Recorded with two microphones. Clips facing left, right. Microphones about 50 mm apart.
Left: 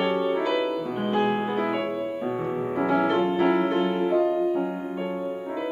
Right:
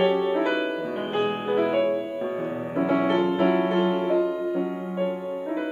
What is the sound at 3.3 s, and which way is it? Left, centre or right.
Music, right.